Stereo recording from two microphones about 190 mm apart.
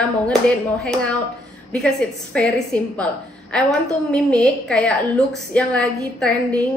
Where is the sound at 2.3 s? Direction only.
5° left (ahead or behind).